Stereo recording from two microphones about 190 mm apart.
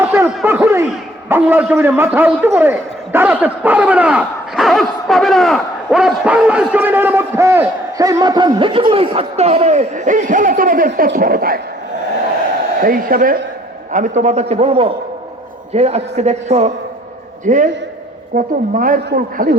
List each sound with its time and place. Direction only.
0.0 s snicker: 10° right (ahead or behind)
1.3 s a man's voice: 10° right (ahead or behind); by 11.6 s 50° right (ahead or behind)
12.8 s a woman's voice: 50° right (ahead or behind)